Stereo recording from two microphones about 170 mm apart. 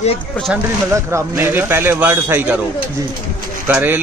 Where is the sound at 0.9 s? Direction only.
15° right (ahead or behind).